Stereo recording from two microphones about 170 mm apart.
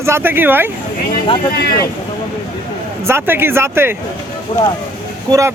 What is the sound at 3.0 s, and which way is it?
Speech, 15° right (ahead or behind).